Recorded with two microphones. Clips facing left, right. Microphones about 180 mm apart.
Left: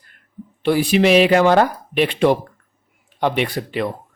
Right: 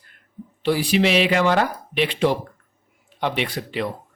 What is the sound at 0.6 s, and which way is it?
Speech, 55° left (ahead or behind).